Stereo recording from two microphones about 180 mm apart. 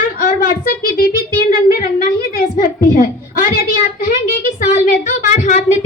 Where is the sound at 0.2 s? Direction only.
55° left (ahead or behind).